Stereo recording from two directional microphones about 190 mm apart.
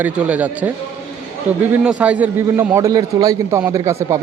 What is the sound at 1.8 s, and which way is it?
A man's voice, 5° right (ahead or behind).